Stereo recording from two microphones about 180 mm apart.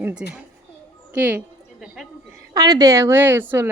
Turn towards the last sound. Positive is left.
turn(degrees=-10)  # may be behind; listen again after turning